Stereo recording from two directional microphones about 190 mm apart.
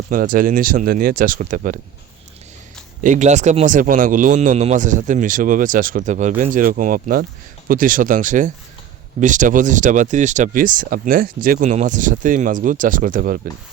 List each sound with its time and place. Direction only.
0.1 s speech: 45° right (ahead or behind)
3.0 s speech: 40° right (ahead or behind)